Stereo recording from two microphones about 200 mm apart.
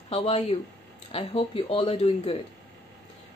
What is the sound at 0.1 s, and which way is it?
Speech, 30° left (ahead or behind).